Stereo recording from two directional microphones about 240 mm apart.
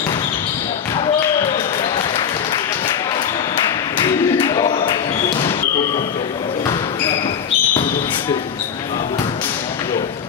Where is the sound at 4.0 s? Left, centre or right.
Centre.